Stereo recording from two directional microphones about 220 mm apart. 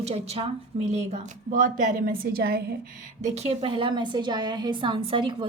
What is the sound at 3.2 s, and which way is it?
A woman's voice, 30° right (ahead or behind).